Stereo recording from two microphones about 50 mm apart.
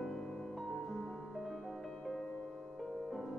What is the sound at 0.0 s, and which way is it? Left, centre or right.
Music, centre.